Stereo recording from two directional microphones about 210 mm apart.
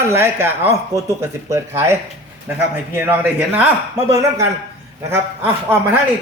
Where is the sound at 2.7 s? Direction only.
10° right (ahead or behind).